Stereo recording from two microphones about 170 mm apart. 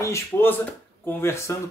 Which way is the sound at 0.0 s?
15° left (ahead or behind).